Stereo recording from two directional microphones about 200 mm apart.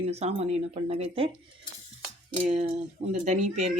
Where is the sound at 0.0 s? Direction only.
30° right (ahead or behind).